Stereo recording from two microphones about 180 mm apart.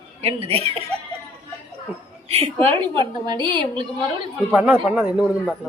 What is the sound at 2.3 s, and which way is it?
A woman's voice, 35° right (ahead or behind).